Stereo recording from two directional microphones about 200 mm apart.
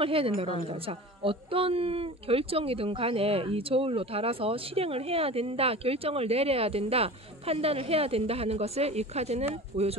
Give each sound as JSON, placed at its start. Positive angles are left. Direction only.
{"t": 0.0, "sound": "speech", "side_deg": -25}